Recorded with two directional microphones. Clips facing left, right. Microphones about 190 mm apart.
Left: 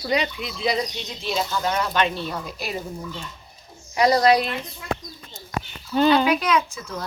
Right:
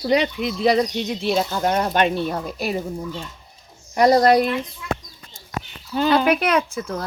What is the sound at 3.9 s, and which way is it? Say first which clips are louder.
Speech: right 3 dB; 50° right (ahead or behind).